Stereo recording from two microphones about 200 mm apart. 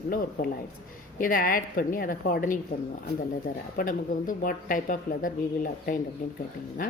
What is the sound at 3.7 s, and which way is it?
A woman's voice, 45° left (ahead or behind).